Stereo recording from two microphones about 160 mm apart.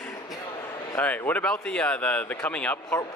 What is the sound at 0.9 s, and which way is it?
A man's voice, 10° left (ahead or behind).